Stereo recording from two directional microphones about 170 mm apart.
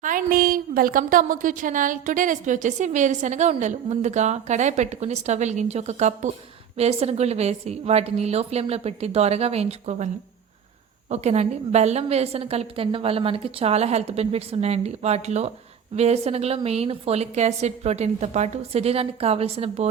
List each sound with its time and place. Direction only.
0.0 s a woman's voice: 55° right (ahead or behind)
11.1 s a woman's voice: 40° right (ahead or behind)